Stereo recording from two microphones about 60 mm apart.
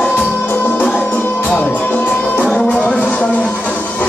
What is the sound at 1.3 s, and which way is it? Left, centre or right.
Music, centre.